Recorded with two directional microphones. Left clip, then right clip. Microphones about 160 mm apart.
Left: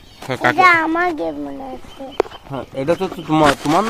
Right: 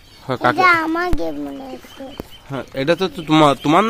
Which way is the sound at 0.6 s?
30° right (ahead or behind).